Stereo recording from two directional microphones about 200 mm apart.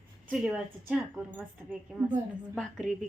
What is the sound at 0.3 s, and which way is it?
A woman's voice, 5° right (ahead or behind).